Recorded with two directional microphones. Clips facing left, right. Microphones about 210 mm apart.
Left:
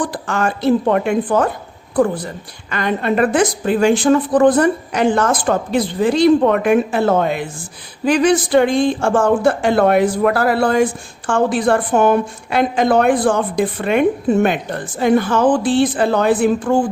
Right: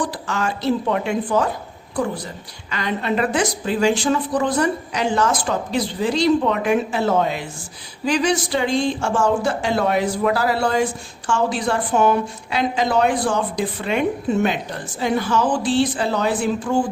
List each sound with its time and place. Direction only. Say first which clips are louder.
0.0 s a woman's voice: left 4 dB; 50° left (ahead or behind)